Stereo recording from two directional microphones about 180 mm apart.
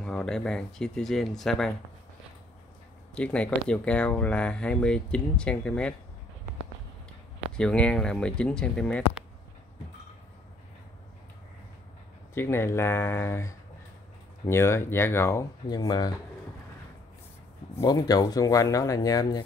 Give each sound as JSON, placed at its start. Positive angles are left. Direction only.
{"t": 0.0, "sound": "speech", "side_deg": 5}
{"t": 3.2, "sound": "speech", "side_deg": 5}
{"t": 7.5, "sound": "speech", "side_deg": 5}
{"t": 12.4, "sound": "speech", "side_deg": 15}
{"t": 17.7, "sound": "speech", "side_deg": 20}